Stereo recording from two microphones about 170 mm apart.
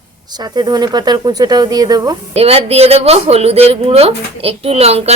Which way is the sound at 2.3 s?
35° right (ahead or behind).